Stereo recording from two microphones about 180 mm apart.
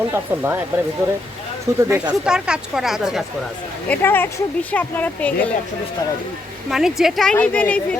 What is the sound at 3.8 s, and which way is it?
Speech, 10° left (ahead or behind).